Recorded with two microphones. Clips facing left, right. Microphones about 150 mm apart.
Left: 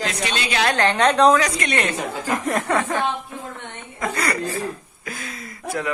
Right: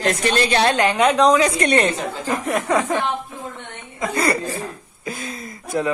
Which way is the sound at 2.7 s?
15° right (ahead or behind).